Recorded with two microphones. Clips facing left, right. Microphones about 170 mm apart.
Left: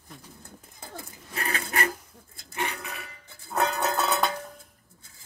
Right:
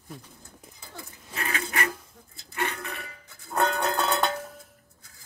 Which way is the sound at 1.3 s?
35° left (ahead or behind).